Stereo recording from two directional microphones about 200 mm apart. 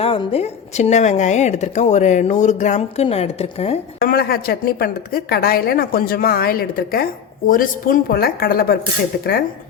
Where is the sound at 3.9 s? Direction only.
50° left (ahead or behind).